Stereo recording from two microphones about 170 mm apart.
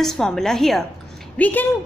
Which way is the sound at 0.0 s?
Centre (ahead or behind).